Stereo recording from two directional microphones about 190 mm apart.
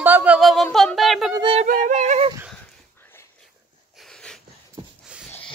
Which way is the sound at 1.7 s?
45° right (ahead or behind).